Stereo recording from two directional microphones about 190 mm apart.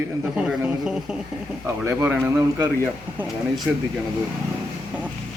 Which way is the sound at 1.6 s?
15° right (ahead or behind).